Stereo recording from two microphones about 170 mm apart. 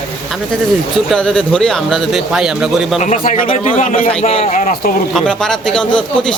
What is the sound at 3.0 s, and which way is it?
A man's voice, 45° left (ahead or behind).